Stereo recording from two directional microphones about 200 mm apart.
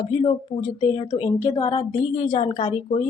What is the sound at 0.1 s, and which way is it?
Speech, 30° left (ahead or behind).